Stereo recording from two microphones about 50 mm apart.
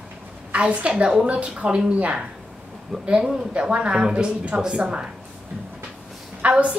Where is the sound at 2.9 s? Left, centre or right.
Centre.